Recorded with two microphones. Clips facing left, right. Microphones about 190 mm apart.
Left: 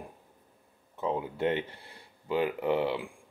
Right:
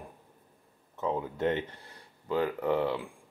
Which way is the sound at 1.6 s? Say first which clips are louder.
Left 1 dB; 30° left (ahead or behind).